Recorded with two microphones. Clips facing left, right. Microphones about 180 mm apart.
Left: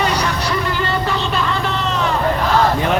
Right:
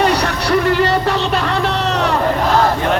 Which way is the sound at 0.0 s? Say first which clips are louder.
Right 3 dB; 65° right (ahead or behind).